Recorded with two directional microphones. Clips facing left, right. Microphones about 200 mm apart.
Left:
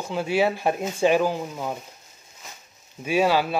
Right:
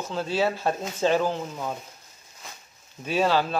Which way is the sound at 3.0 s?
10° left (ahead or behind).